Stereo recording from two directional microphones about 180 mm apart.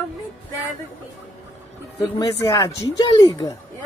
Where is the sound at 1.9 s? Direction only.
25° left (ahead or behind).